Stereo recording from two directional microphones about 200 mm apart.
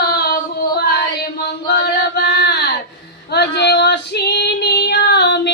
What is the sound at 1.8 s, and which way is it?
Chant, 55° left (ahead or behind).